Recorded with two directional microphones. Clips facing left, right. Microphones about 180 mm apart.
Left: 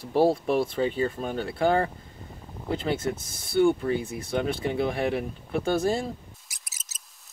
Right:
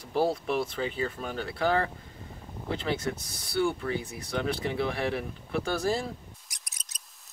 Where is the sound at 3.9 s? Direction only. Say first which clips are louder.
Left 5 dB; 25° left (ahead or behind).